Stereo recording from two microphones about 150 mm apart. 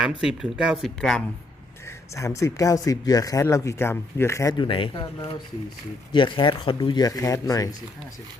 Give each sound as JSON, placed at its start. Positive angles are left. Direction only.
{"t": 0.0, "sound": "speech", "side_deg": -5}
{"t": 2.1, "sound": "speech", "side_deg": 20}